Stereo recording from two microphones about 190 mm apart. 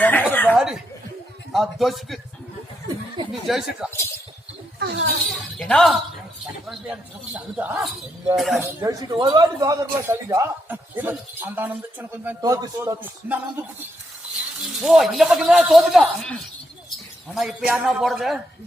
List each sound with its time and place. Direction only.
0.0 s chuckle: 10° left (ahead or behind)
0.5 s speech: 5° right (ahead or behind)
3.4 s speech: centre (ahead or behind)
4.8 s speech: 55° right (ahead or behind)
5.3 s speech: 5° left (ahead or behind)
8.8 s a man's voice: 15° right (ahead or behind)
12.4 s a man's voice: 20° right (ahead or behind)
14.8 s speech: centre (ahead or behind)